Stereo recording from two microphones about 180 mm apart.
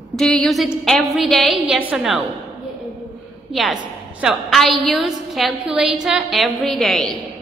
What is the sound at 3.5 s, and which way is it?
A woman's voice, centre (ahead or behind).